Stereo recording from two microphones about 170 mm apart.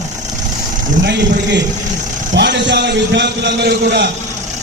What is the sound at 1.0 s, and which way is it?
A man's voice, 90° right.